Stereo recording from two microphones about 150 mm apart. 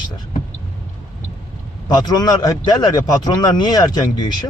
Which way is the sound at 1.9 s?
25° left (ahead or behind).